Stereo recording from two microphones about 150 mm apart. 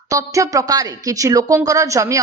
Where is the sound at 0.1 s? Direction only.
20° right (ahead or behind).